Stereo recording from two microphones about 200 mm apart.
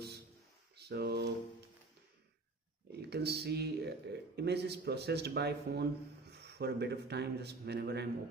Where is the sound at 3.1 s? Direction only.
55° right (ahead or behind).